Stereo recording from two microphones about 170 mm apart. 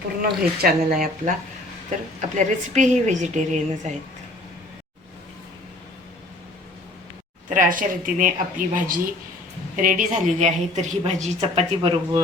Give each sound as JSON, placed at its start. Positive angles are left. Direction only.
{"t": 0.2, "sound": "a woman's voice", "side_deg": -65}
{"t": 7.5, "sound": "a woman's voice", "side_deg": -50}